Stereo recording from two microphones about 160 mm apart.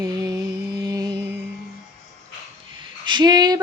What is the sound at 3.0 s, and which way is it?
Speech, 25° right (ahead or behind).